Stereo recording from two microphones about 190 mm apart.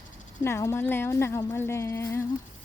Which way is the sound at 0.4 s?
15° left (ahead or behind).